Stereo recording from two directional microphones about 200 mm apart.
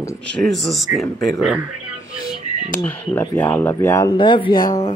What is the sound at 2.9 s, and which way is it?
Speech, 10° left (ahead or behind).